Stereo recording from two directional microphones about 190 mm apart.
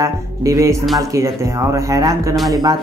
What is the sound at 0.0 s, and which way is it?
Speech, 15° right (ahead or behind).